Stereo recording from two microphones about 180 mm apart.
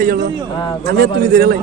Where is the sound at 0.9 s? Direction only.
55° right (ahead or behind).